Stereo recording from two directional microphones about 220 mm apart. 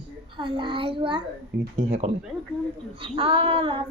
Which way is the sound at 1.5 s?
45° right (ahead or behind).